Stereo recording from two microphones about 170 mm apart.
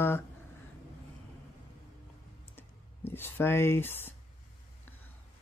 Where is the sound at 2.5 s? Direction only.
10° left (ahead or behind).